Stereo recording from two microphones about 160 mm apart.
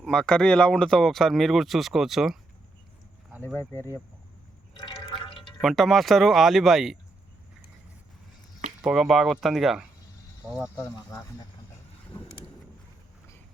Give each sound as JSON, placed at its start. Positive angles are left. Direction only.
{"t": 0.0, "sound": "speech", "side_deg": 0}
{"t": 3.3, "sound": "speech", "side_deg": -15}
{"t": 3.6, "sound": "speech", "side_deg": 15}
{"t": 4.8, "sound": "drip", "side_deg": 30}
{"t": 5.5, "sound": "speech", "side_deg": 0}
{"t": 8.8, "sound": "speech", "side_deg": 0}
{"t": 10.9, "sound": "speech", "side_deg": 20}